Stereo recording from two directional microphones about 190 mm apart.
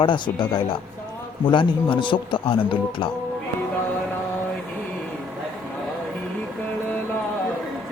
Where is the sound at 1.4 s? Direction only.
25° left (ahead or behind).